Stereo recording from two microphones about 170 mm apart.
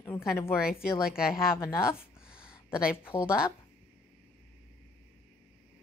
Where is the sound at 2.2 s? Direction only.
5° right (ahead or behind).